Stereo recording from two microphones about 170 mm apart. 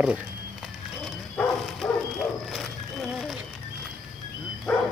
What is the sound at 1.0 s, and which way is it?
Horse, 5° left (ahead or behind).